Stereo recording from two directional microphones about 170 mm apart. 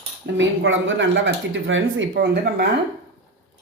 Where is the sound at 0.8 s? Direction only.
90° right.